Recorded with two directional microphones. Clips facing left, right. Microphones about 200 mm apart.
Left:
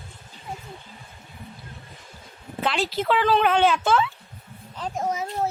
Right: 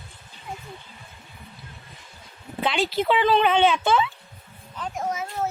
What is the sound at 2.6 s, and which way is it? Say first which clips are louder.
Speech: right 1 dB; centre (ahead or behind).